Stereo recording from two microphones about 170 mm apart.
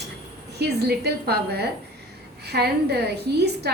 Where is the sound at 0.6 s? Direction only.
70° right (ahead or behind).